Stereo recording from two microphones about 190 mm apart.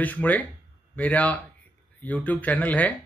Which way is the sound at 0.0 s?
10° left (ahead or behind).